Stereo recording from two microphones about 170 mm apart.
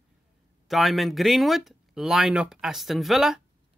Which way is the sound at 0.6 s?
Centre (ahead or behind).